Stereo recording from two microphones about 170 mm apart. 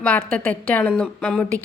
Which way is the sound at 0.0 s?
5° left (ahead or behind).